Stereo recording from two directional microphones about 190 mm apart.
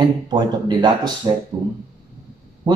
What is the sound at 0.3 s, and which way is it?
Speech, 25° right (ahead or behind).